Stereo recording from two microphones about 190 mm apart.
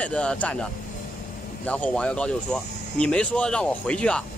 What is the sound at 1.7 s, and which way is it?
Speech, 5° left (ahead or behind).